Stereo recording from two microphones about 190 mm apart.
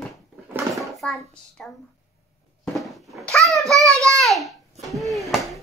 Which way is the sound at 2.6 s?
Centre (ahead or behind).